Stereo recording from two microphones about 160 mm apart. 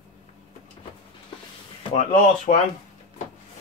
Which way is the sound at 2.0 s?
50° left (ahead or behind).